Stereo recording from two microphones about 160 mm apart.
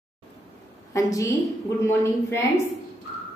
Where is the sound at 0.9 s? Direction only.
20° left (ahead or behind).